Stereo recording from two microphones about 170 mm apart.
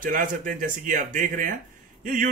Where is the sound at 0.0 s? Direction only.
55° right (ahead or behind).